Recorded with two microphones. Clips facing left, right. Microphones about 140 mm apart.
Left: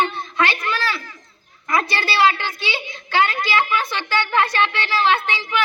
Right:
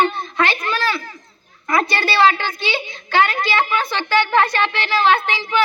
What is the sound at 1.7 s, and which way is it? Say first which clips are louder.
Speech: right 3 dB; 25° right (ahead or behind).